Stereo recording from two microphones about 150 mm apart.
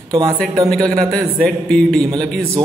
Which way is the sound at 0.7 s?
5° left (ahead or behind).